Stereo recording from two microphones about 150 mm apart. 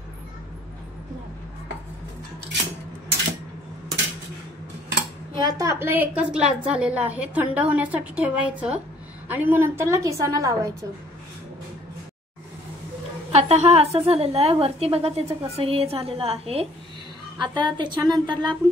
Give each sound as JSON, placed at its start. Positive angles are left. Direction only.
{"t": 5.3, "sound": "a woman's voice", "side_deg": -30}
{"t": 13.3, "sound": "a woman's voice", "side_deg": -45}
{"t": 17.4, "sound": "a woman's voice", "side_deg": -30}